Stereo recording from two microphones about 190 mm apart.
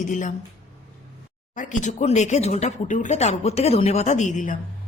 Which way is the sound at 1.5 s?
40° left (ahead or behind).